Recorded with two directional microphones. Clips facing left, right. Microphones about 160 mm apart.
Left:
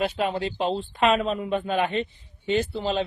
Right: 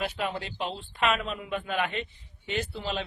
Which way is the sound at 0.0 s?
30° left (ahead or behind).